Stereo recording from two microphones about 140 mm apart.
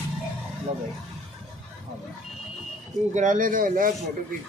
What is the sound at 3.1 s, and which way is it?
Speech, 65° right (ahead or behind).